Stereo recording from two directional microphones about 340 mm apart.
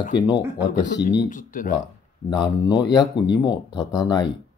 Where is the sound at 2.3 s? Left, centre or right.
Centre.